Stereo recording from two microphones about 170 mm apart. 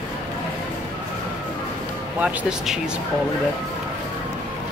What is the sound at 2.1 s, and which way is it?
Speech, 5° right (ahead or behind).